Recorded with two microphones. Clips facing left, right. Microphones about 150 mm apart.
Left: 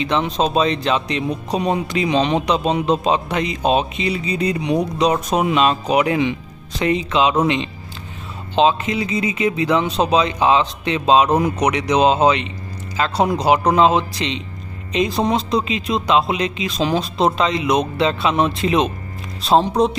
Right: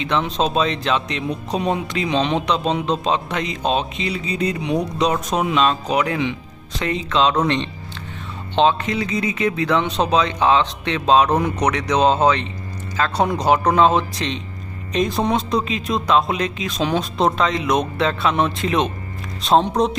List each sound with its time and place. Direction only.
0.0 s a man's voice: centre (ahead or behind)
11.6 s a man's voice: 15° left (ahead or behind)
13.1 s speech: centre (ahead or behind)